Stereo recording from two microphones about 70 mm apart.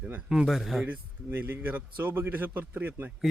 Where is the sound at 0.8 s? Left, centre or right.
Right.